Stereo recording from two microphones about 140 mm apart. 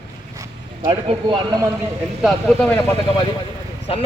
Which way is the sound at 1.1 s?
35° right (ahead or behind).